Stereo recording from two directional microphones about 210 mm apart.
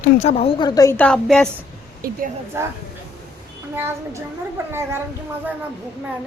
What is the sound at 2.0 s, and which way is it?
Speech, 40° right (ahead or behind).